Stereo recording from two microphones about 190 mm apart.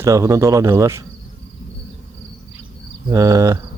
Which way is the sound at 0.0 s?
15° right (ahead or behind).